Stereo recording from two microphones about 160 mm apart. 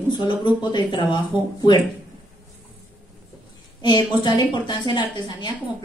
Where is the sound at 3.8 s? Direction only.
25° left (ahead or behind).